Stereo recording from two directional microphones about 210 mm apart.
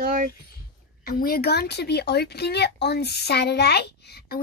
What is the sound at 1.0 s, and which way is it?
A woman's voice, 45° left (ahead or behind).